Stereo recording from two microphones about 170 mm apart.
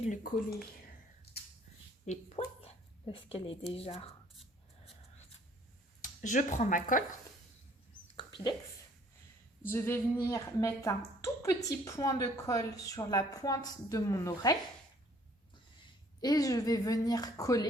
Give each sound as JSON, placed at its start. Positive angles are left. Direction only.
{"t": 0.0, "sound": "speech", "side_deg": 50}
{"t": 1.3, "sound": "a sound", "side_deg": 70}
{"t": 2.0, "sound": "a woman's voice", "side_deg": 40}
{"t": 6.0, "sound": "speech", "side_deg": 50}
{"t": 9.6, "sound": "a woman's voice", "side_deg": 15}
{"t": 16.2, "sound": "a woman's voice", "side_deg": 20}